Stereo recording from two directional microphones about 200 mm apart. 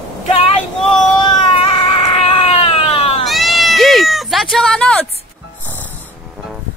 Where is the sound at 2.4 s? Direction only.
30° left (ahead or behind).